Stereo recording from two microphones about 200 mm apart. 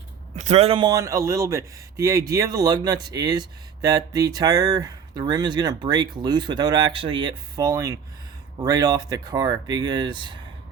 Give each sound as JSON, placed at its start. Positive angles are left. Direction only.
{"t": 0.3, "sound": "a man's voice", "side_deg": -35}